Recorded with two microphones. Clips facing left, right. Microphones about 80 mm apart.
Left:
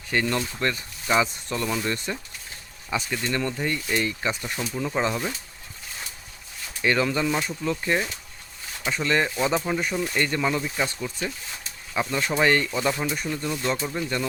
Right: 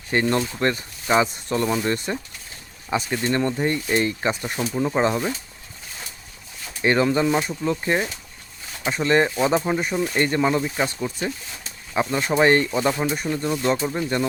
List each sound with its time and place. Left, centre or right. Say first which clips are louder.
0.1 s speech: right 4 dB; right
6.8 s speech: right 4 dB; right